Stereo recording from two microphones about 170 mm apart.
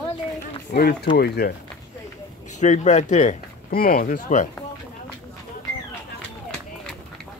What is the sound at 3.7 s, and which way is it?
Speech, 60° left (ahead or behind).